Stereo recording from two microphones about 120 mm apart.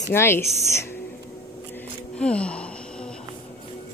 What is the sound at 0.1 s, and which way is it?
Speech, 20° left (ahead or behind).